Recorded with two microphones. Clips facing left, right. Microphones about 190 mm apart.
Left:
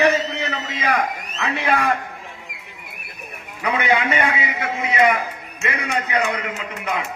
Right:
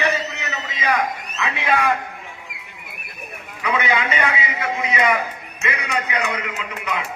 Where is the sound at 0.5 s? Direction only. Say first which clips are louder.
Right 2 dB; 60° left (ahead or behind).